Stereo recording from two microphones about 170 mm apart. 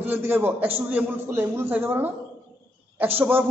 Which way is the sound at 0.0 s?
10° right (ahead or behind).